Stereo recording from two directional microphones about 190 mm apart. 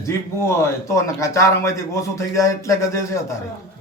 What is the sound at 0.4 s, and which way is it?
A man's voice, 15° left (ahead or behind).